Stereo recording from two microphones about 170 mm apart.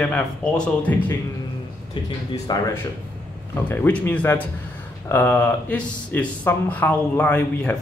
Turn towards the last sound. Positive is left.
turn(degrees=5)  # may be behind; listen again after turning